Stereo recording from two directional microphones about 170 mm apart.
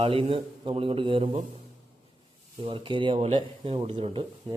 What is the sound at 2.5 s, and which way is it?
A man's voice, 30° right (ahead or behind).